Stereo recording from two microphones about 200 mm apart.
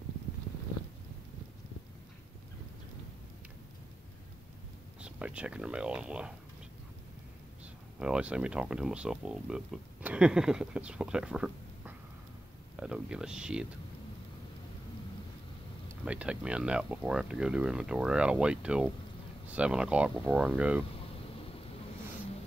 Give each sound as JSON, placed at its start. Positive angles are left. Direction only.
{"t": 5.0, "sound": "speech", "side_deg": -5}
{"t": 7.6, "sound": "speech", "side_deg": -5}
{"t": 16.1, "sound": "speech", "side_deg": -5}